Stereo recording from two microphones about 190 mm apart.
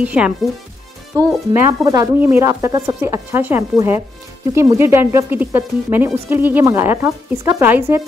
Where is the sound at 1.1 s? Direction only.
20° right (ahead or behind).